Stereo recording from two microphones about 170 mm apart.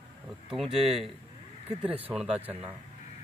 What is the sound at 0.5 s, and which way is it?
Speech, centre (ahead or behind).